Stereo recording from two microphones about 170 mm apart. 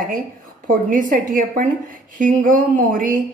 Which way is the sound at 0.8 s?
50° right (ahead or behind).